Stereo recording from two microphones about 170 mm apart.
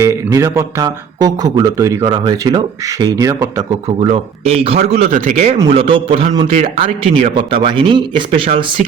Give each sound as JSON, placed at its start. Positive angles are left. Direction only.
{"t": 0.0, "sound": "speech", "side_deg": -20}
{"t": 3.8, "sound": "speech", "side_deg": -35}
{"t": 6.5, "sound": "speech", "side_deg": -45}